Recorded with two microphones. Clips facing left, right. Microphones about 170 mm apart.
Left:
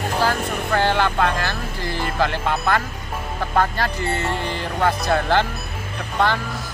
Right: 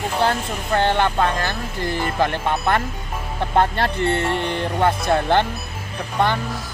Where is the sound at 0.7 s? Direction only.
20° right (ahead or behind).